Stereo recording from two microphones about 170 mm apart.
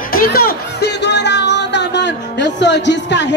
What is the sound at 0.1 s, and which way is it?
Speech, 60° left (ahead or behind).